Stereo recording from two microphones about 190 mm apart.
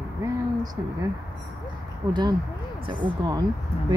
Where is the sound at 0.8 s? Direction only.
15° right (ahead or behind).